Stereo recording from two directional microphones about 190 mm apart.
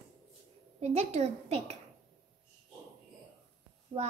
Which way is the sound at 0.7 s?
35° right (ahead or behind).